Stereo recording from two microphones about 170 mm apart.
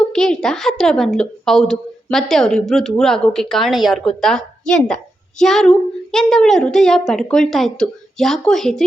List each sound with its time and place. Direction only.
0.1 s a woman's voice: 5° left (ahead or behind)